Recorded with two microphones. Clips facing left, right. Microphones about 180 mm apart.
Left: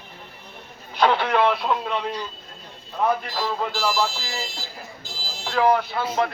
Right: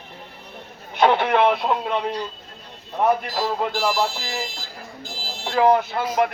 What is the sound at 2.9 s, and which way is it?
Speech, 20° right (ahead or behind).